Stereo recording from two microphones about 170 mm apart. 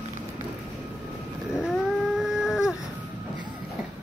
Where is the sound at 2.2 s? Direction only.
5° right (ahead or behind).